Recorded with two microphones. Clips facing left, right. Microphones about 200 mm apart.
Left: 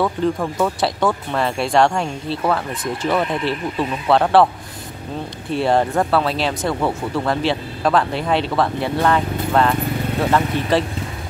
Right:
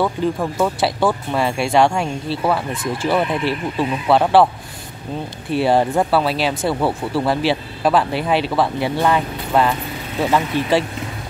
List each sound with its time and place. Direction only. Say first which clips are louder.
0.0 s speech: even; 5° right (ahead or behind)
3.1 s speech: right 1 dB; 5° right (ahead or behind)
5.5 s speech: right 1 dB; 5° right (ahead or behind)